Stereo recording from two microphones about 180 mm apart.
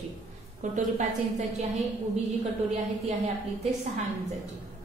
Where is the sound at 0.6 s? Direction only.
45° right (ahead or behind).